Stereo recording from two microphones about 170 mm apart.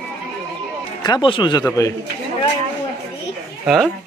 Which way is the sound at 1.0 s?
25° left (ahead or behind).